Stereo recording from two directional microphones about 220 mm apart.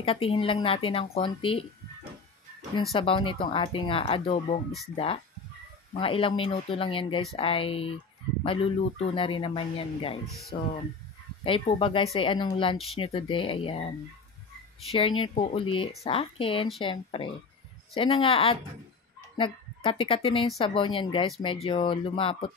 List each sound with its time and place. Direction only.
0.0 s speech: 25° left (ahead or behind)
2.9 s a woman's voice: 25° left (ahead or behind)